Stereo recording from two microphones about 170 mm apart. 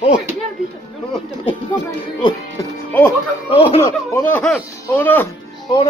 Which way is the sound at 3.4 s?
35° left (ahead or behind).